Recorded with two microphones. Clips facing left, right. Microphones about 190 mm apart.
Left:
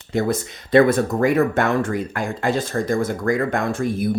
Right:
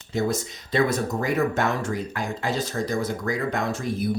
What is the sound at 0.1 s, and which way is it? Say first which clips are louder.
Speech: left 4 dB; 55° left (ahead or behind).